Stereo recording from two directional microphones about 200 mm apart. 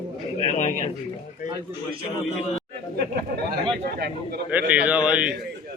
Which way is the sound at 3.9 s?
55° right (ahead or behind).